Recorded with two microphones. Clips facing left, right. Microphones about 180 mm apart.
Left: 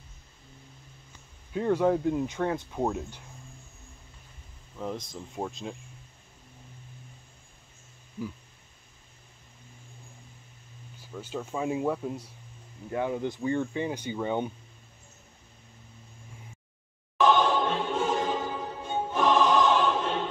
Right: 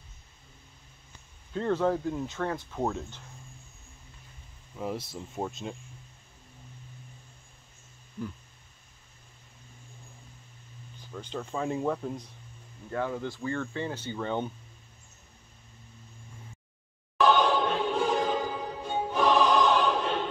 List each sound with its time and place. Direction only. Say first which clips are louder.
1.5 s speech: left 2 dB; 10° left (ahead or behind)
4.7 s speech: right 1 dB; 5° right (ahead or behind)
11.0 s speech: left 1 dB; 5° left (ahead or behind)
12.9 s speech: left 2 dB; 20° left (ahead or behind)
17.6 s choir: even; 5° right (ahead or behind)
17.9 s music: right 1 dB; 5° left (ahead or behind)
19.7 s choir: even; centre (ahead or behind)